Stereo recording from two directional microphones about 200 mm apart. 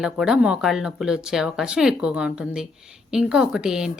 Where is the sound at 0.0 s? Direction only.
5° right (ahead or behind).